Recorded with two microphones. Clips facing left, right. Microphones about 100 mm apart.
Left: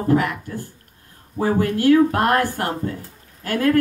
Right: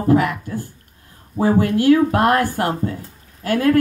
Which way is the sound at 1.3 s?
15° right (ahead or behind).